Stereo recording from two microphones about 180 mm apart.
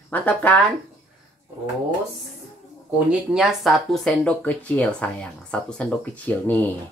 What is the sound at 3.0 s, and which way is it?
Speech, centre (ahead or behind).